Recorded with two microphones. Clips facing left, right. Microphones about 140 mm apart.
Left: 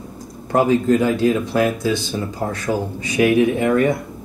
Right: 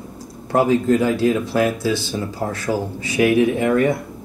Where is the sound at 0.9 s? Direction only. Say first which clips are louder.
Left 1 dB; 25° left (ahead or behind).